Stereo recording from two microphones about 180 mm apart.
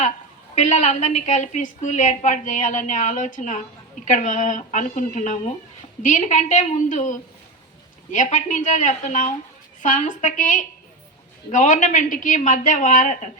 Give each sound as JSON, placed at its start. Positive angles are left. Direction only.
{"t": 0.5, "sound": "a woman's voice", "side_deg": 40}